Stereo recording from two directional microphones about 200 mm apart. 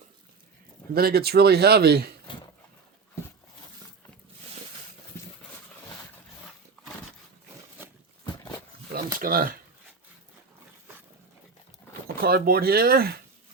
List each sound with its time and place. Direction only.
0.9 s speech: 50° right (ahead or behind)
8.9 s a sound: 45° right (ahead or behind)
12.0 s speech: 50° right (ahead or behind)